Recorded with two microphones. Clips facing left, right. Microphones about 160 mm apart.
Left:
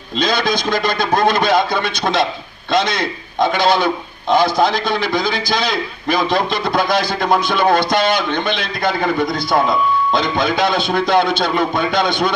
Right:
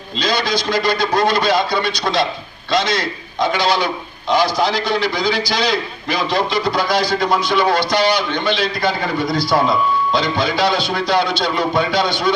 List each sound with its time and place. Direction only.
0.2 s a man's voice: 50° left (ahead or behind)
10.1 s a man's voice: 50° left (ahead or behind)